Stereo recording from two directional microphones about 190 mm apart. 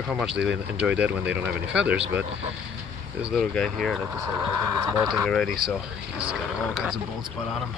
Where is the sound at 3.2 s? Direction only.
Centre (ahead or behind).